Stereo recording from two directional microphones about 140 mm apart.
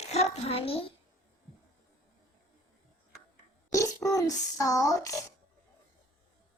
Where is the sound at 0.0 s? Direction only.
50° left (ahead or behind).